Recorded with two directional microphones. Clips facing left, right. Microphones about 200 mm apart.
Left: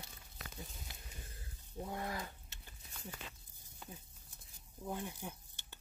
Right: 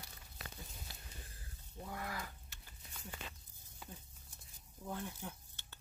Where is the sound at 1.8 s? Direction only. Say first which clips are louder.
Left 3 dB; 25° left (ahead or behind).